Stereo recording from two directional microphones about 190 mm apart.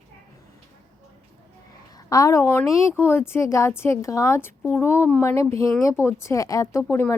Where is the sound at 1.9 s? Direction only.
20° left (ahead or behind).